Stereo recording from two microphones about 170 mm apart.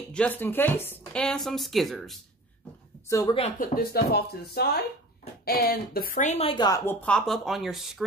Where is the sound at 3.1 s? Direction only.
20° left (ahead or behind).